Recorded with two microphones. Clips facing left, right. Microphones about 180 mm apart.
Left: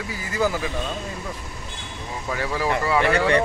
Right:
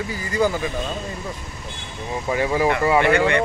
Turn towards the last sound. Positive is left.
turn(degrees=-15)  # may be behind; listen again after turning